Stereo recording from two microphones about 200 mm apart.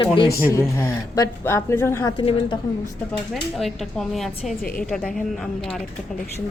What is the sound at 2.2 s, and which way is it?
Speech, 25° left (ahead or behind).